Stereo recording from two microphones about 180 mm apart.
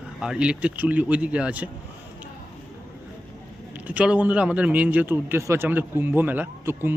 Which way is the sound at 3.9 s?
5° right (ahead or behind).